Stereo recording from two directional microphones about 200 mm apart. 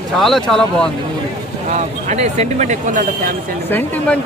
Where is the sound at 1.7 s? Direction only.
35° right (ahead or behind).